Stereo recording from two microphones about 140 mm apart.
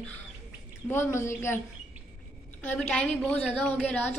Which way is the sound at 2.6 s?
10° left (ahead or behind).